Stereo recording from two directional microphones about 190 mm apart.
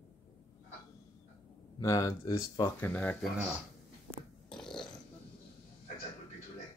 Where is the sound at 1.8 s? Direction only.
15° left (ahead or behind).